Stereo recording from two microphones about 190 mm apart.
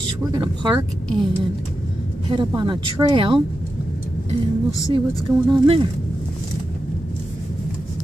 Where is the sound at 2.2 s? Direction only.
25° right (ahead or behind).